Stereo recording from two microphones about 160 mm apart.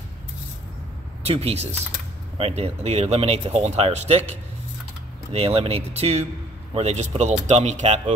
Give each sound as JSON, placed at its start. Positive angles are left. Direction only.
{"t": 1.2, "sound": "speech", "side_deg": -40}